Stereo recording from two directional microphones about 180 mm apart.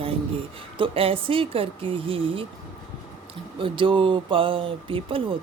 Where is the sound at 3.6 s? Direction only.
30° right (ahead or behind).